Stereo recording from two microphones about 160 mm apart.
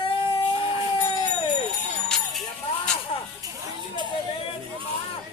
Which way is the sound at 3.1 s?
35° left (ahead or behind).